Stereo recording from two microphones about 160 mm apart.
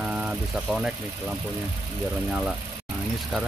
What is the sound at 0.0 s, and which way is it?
Vehicle, 5° right (ahead or behind).